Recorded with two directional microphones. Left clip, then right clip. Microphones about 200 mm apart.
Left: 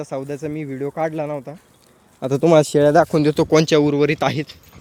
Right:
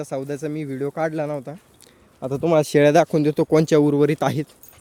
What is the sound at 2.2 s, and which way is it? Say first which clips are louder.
Speech: left 5 dB; 15° left (ahead or behind).